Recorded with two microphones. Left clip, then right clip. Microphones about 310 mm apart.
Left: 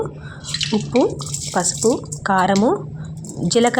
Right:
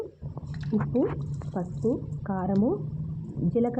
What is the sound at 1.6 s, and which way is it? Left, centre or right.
A woman's voice, left.